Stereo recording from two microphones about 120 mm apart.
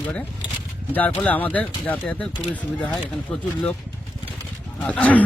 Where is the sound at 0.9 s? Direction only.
15° left (ahead or behind).